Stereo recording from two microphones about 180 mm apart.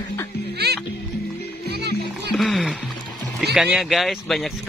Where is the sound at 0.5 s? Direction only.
65° right (ahead or behind).